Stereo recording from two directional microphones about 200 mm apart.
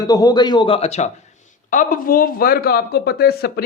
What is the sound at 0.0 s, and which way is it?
A man's voice, 20° left (ahead or behind).